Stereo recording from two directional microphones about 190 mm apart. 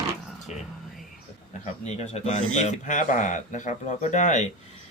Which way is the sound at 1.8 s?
35° left (ahead or behind).